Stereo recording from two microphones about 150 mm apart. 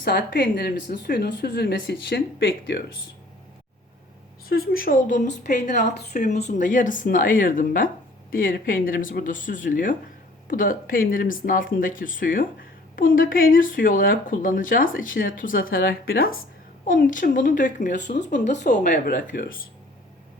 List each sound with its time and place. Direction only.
0.0 s a woman's voice: 90° left
4.4 s a woman's voice: 85° left
16.8 s a woman's voice: 65° left (ahead or behind)